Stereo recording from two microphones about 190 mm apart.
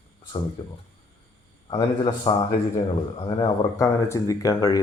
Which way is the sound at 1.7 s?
25° left (ahead or behind).